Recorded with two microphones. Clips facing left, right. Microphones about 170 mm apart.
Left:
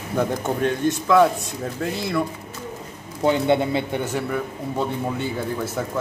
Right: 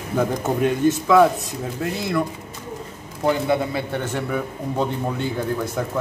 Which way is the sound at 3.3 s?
25° left (ahead or behind).